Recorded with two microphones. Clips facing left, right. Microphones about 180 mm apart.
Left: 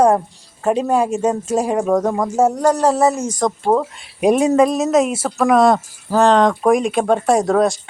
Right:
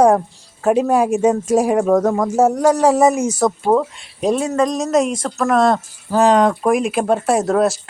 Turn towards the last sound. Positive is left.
turn(degrees=0)  # may be behind; listen again after turning